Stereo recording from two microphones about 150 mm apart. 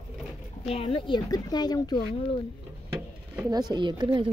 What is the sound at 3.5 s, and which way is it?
Speech, 25° right (ahead or behind).